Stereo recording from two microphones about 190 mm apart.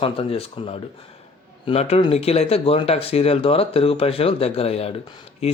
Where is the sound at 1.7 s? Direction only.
30° left (ahead or behind).